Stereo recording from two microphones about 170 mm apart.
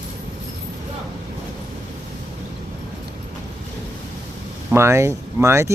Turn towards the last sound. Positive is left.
turn(degrees=-15)  # may be behind; listen again after turning